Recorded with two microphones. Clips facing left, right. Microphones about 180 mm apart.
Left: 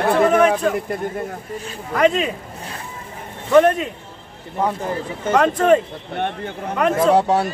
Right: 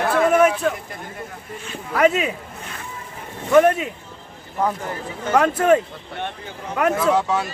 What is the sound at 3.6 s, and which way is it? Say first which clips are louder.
Speech: left 1 dB; 10° right (ahead or behind).